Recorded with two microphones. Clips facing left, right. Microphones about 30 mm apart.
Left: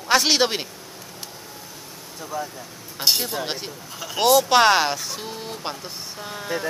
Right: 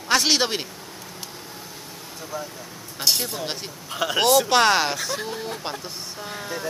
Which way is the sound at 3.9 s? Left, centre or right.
Right.